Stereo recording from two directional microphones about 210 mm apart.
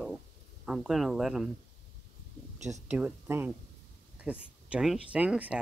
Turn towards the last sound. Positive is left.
turn(degrees=-5)  # may be behind; listen again after turning